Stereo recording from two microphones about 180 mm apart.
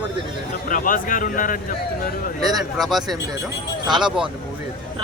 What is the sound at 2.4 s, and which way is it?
Speech, centre (ahead or behind).